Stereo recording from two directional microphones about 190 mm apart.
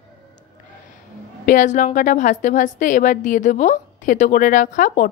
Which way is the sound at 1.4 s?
45° left (ahead or behind).